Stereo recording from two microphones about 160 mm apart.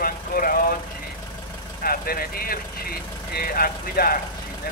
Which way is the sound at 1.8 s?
65° left (ahead or behind).